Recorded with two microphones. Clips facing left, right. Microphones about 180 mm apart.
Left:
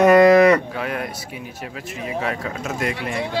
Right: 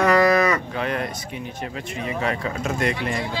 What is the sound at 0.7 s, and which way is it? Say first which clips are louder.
Speech: right 1 dB; 5° left (ahead or behind).